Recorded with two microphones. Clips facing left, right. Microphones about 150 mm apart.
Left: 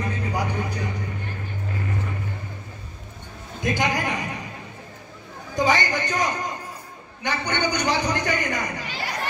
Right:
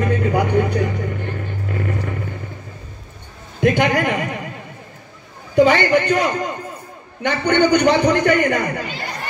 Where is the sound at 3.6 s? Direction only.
65° right (ahead or behind).